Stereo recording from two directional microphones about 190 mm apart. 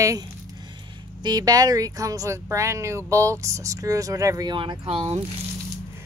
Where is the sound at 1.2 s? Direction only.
20° right (ahead or behind).